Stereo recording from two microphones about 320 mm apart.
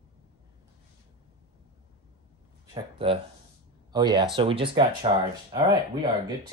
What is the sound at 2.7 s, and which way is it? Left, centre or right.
Speech, centre.